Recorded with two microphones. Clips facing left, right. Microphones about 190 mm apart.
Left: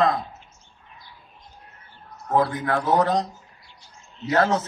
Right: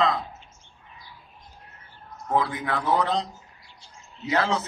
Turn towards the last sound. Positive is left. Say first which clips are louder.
# left 4 dB
turn(degrees=50)  # may be behind; listen again after turning